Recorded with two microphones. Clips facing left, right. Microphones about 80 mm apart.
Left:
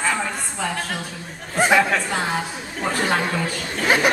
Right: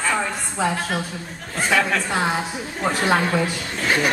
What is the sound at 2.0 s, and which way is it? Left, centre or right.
A woman's voice, centre.